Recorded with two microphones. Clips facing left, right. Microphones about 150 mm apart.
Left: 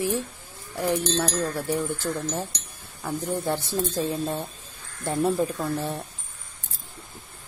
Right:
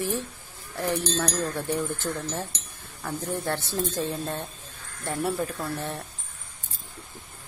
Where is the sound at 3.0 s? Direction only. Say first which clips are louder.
Left 3 dB; 10° left (ahead or behind).